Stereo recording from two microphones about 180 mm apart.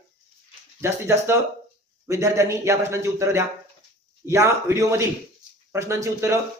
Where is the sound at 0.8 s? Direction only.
15° right (ahead or behind).